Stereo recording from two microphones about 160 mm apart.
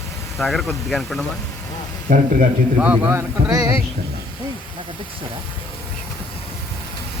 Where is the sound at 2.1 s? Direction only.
55° right (ahead or behind).